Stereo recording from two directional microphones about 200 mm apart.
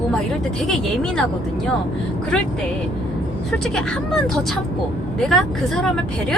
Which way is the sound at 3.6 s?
5° left (ahead or behind).